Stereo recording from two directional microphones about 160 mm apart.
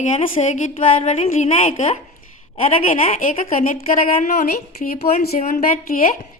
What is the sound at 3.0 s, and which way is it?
Speech, 55° left (ahead or behind).